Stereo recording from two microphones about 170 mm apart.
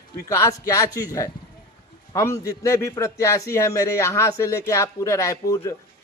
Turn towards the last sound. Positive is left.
turn(degrees=20)  # may be behind; listen again after turning